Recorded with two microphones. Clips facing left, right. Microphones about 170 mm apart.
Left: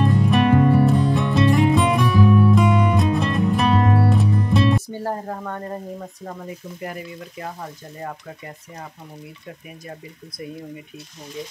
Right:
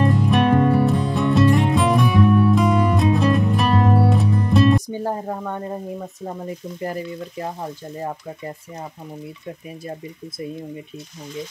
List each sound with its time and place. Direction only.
0.0 s music: centre (ahead or behind)
4.8 s speech: 15° right (ahead or behind)
6.8 s frying: 30° right (ahead or behind)